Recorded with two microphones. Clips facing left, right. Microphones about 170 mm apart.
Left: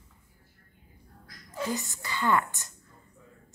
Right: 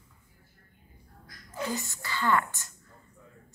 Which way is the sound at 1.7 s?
20° left (ahead or behind).